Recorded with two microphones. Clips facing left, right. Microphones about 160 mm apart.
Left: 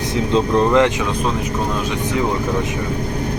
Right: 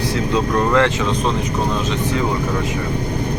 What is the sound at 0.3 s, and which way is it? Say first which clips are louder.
Speech: left 3 dB; 20° left (ahead or behind).